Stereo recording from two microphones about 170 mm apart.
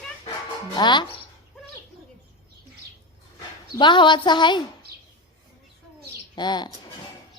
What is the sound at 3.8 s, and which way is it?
Speech, 25° left (ahead or behind).